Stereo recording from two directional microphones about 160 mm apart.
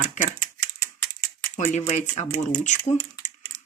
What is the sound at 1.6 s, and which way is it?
Speech, 50° left (ahead or behind).